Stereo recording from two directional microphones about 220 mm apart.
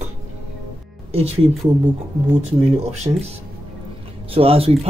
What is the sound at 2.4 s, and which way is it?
Speech, 30° right (ahead or behind).